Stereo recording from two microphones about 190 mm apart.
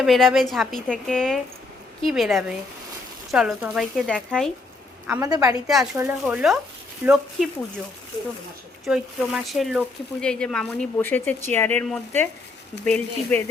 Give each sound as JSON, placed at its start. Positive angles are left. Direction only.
{"t": 0.0, "sound": "speech", "side_deg": 0}
{"t": 5.0, "sound": "speech", "side_deg": -15}
{"t": 5.6, "sound": "speech", "side_deg": 0}
{"t": 8.8, "sound": "speech", "side_deg": 0}